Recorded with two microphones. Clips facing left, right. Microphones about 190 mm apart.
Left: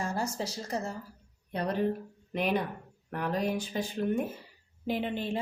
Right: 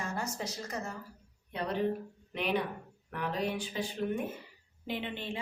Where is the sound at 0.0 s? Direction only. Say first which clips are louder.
Left 4 dB; 35° left (ahead or behind).